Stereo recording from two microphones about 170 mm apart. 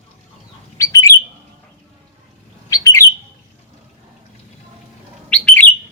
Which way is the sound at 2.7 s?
20° left (ahead or behind).